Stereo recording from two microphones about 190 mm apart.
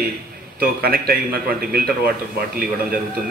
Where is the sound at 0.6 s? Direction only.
55° right (ahead or behind).